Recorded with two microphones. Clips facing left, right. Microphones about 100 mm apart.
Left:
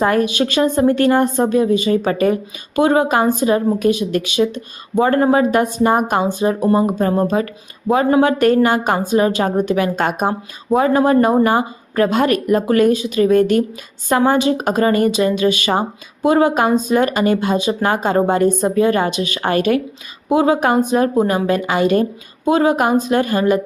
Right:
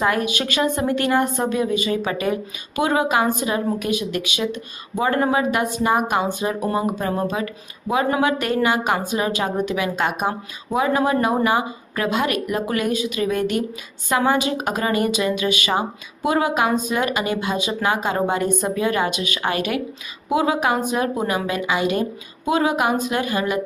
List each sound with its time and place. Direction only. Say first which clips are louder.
0.0 s a woman's voice: left 5 dB; 35° left (ahead or behind)